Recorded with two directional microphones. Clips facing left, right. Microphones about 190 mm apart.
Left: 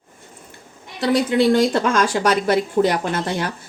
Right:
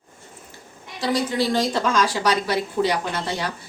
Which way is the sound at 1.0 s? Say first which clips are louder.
Left 6 dB; 60° left (ahead or behind).